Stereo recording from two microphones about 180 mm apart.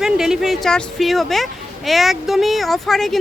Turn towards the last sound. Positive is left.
turn(degrees=0)  # may be behind; listen again after turning